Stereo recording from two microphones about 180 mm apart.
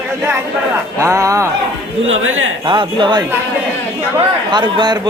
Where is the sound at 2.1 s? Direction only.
90° right.